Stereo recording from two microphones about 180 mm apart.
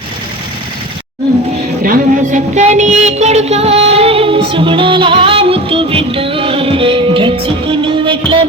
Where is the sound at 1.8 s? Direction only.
50° right (ahead or behind).